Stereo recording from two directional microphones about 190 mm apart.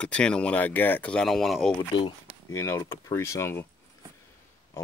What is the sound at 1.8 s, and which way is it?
Speech, 25° left (ahead or behind).